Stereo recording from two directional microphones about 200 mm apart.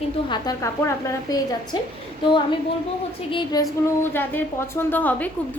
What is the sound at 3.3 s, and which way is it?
A woman's voice, 20° left (ahead or behind).